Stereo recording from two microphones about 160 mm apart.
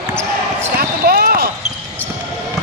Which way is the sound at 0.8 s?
70° right (ahead or behind).